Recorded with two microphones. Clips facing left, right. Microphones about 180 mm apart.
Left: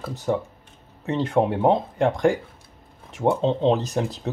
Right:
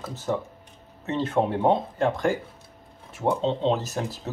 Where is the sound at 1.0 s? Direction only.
15° left (ahead or behind).